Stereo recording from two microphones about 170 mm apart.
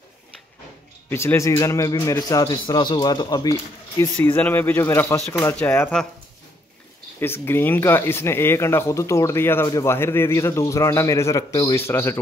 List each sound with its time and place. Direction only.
1.1 s a man's voice: 15° left (ahead or behind)
7.2 s speech: 15° left (ahead or behind)